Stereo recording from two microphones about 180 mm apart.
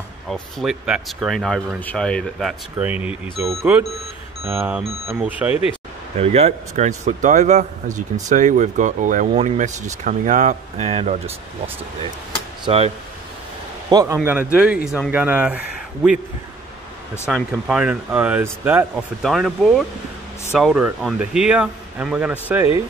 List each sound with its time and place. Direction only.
0.3 s speech: centre (ahead or behind)
2.8 s speech: 5° right (ahead or behind)
6.1 s a man's voice: 35° right (ahead or behind)
13.8 s speech: 20° right (ahead or behind)
17.3 s speech: 5° right (ahead or behind)